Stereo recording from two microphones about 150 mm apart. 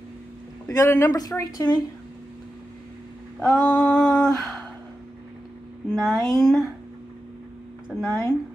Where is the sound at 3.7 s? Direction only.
5° left (ahead or behind).